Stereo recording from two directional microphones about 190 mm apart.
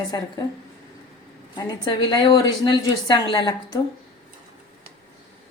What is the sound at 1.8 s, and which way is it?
A woman's voice, 25° left (ahead or behind).